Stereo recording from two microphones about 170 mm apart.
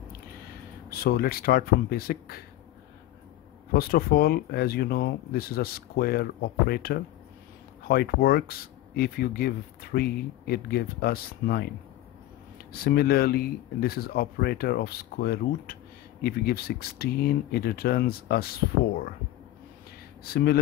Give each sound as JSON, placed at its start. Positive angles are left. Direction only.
{"t": 0.8, "sound": "speech", "side_deg": 60}
{"t": 3.7, "sound": "speech", "side_deg": 65}
{"t": 12.7, "sound": "speech", "side_deg": 65}
{"t": 20.2, "sound": "speech", "side_deg": 65}